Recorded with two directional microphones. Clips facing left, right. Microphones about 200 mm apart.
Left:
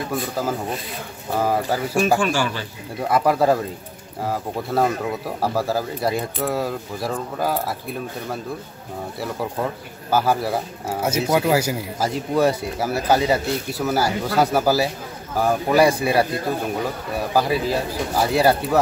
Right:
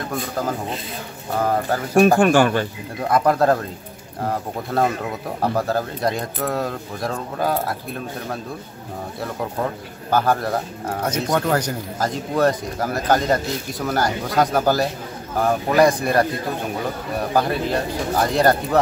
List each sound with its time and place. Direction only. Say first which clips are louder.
0.1 s speech: even; 5° left (ahead or behind)
2.0 s speech: right 7 dB; 55° right (ahead or behind)
3.1 s speech: right 1 dB; 5° left (ahead or behind)
10.1 s speech: even; 5° left (ahead or behind)
17.3 s speech: left 1 dB; 5° left (ahead or behind)